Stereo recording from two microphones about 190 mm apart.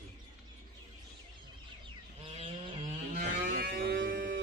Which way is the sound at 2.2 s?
25° right (ahead or behind).